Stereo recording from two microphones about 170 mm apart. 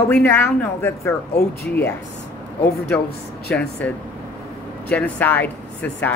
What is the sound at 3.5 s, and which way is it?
Speech, 10° left (ahead or behind).